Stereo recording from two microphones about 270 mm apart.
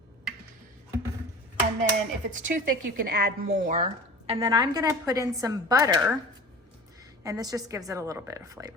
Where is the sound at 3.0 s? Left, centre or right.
Right.